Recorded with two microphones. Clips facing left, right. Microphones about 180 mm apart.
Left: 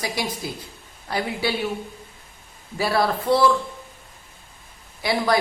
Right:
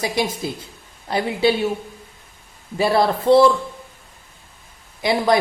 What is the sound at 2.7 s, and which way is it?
Speech, 25° right (ahead or behind).